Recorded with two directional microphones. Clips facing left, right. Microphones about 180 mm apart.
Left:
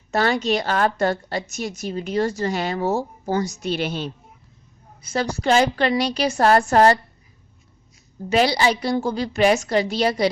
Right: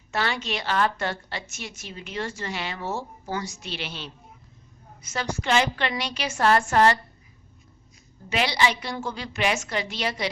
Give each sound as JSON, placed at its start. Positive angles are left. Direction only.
{"t": 0.1, "sound": "a woman's voice", "side_deg": 40}
{"t": 5.0, "sound": "a woman's voice", "side_deg": 35}
{"t": 8.3, "sound": "a woman's voice", "side_deg": 35}